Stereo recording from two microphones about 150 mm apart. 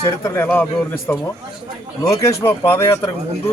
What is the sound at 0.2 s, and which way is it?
Speech, 20° left (ahead or behind).